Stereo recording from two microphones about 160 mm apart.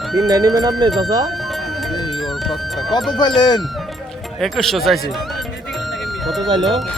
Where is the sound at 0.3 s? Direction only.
25° right (ahead or behind).